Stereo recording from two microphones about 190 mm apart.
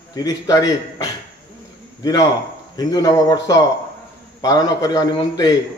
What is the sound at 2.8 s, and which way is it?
Speech, 20° left (ahead or behind).